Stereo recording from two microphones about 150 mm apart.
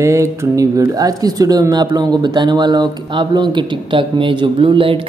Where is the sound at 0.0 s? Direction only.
20° right (ahead or behind).